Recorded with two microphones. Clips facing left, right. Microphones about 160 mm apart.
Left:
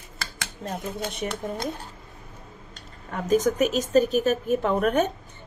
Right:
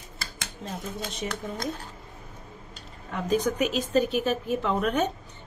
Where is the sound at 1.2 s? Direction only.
50° left (ahead or behind).